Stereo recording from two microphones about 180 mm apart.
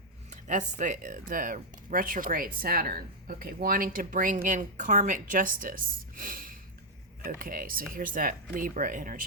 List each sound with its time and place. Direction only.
0.3 s speech: 45° right (ahead or behind)